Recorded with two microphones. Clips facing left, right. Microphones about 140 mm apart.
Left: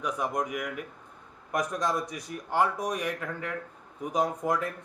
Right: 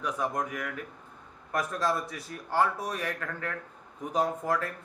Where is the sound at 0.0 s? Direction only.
15° left (ahead or behind).